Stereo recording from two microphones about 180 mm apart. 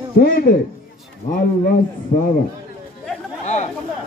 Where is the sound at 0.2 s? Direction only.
55° left (ahead or behind).